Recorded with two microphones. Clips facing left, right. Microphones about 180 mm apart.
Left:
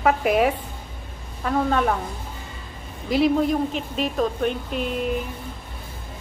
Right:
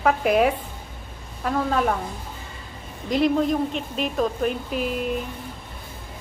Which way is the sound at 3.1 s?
Centre (ahead or behind).